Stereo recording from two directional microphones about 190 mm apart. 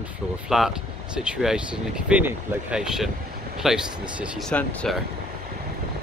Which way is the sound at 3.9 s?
25° right (ahead or behind).